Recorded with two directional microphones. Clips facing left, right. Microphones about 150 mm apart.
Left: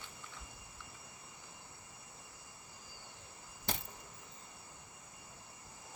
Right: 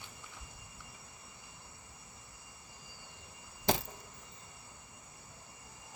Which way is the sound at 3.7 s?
90° right.